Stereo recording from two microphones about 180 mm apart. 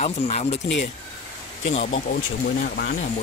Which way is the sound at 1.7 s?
35° left (ahead or behind).